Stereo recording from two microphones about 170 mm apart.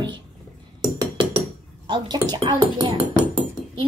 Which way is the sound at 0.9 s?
30° right (ahead or behind).